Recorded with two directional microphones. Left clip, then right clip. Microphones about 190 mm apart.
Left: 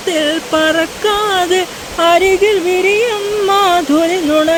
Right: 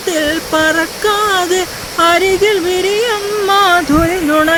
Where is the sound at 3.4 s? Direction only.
15° left (ahead or behind).